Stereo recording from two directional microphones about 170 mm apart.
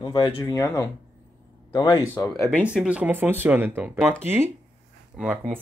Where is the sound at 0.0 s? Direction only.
25° left (ahead or behind).